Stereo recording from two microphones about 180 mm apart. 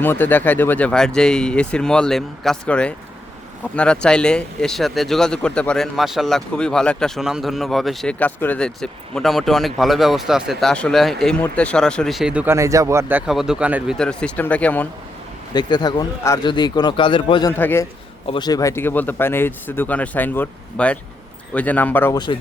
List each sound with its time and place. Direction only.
0.0 s speech: 10° left (ahead or behind); by 13.9 s 5° right (ahead or behind)
14.0 s speech: 5° left (ahead or behind)
15.5 s speech: 25° left (ahead or behind)
17.5 s speech: 10° left (ahead or behind)
18.3 s speech: 25° left (ahead or behind)